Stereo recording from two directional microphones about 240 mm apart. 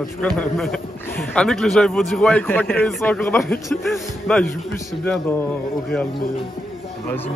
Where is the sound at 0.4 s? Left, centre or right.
Centre.